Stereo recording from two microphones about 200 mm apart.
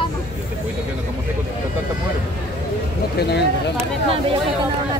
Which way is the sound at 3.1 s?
55° left (ahead or behind).